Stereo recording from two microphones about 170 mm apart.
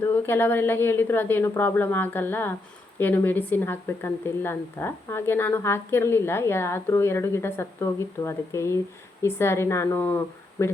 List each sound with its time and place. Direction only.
0.0 s speech: 10° left (ahead or behind)